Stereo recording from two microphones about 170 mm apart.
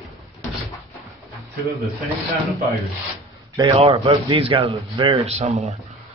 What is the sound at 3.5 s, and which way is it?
A man's voice, 30° right (ahead or behind).